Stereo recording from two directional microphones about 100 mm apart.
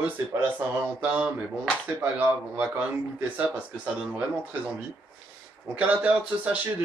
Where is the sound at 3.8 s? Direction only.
15° right (ahead or behind).